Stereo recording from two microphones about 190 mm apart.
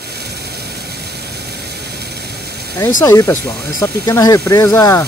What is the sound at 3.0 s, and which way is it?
Speech, 15° left (ahead or behind).